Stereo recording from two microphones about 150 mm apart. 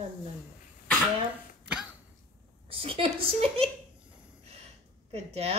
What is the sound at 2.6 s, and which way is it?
A woman's voice, 40° right (ahead or behind).